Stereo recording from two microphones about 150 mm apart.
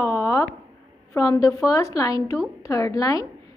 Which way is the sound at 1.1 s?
20° left (ahead or behind).